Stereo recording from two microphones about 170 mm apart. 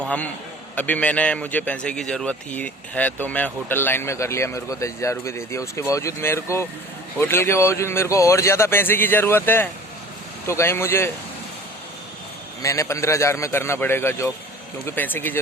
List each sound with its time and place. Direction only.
0.0 s a man's voice: 10° left (ahead or behind)
12.6 s a man's voice: 20° left (ahead or behind)